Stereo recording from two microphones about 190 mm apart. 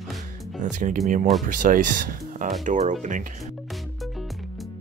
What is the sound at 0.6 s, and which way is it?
Speech, 40° right (ahead or behind).